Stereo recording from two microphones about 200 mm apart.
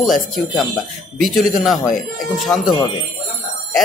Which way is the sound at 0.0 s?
Centre (ahead or behind).